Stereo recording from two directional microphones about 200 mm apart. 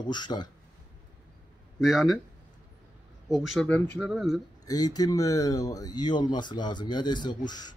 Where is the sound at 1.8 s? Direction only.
Centre (ahead or behind).